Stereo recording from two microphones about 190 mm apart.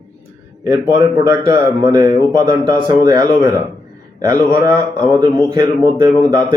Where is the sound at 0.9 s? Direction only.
15° right (ahead or behind).